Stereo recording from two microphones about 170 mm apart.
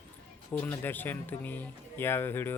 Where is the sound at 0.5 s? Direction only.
15° left (ahead or behind).